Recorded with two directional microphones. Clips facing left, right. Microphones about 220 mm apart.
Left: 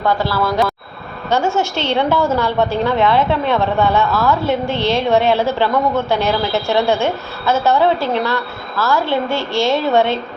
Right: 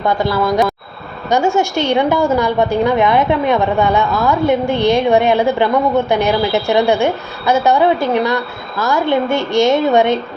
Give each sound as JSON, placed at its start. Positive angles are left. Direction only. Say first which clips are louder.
{"t": 0.0, "sound": "a woman's voice", "louder": "right 2 dB", "side_deg": -15}